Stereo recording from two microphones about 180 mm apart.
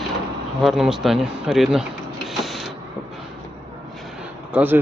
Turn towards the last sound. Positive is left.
turn(degrees=-10)  # may be behind; listen again after turning